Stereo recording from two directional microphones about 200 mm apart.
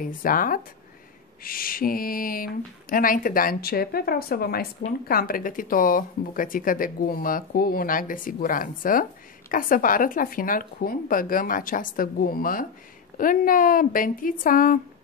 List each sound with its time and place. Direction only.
0.0 s speech: 45° left (ahead or behind)